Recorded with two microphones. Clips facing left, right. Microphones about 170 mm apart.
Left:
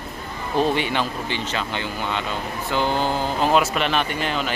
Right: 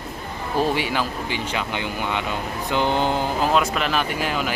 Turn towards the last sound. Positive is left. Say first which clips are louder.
# even
turn(degrees=-10)  # may be behind; listen again after turning